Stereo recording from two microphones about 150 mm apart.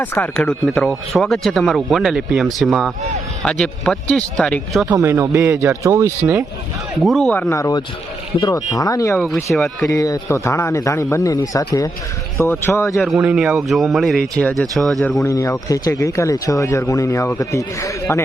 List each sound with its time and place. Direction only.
0.0 s speech: 10° left (ahead or behind)
4.9 s speech: 20° right (ahead or behind)
7.0 s speech: centre (ahead or behind)
7.5 s speech: 25° left (ahead or behind)
9.1 s speech: centre (ahead or behind)
9.8 s speech: 25° left (ahead or behind)
13.0 s speech: centre (ahead or behind)
15.2 s speech: 20° left (ahead or behind)